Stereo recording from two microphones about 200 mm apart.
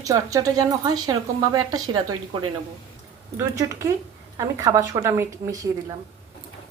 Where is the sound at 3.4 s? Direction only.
15° right (ahead or behind).